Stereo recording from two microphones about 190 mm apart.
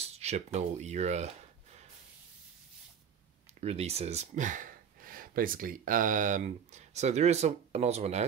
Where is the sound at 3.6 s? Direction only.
35° right (ahead or behind).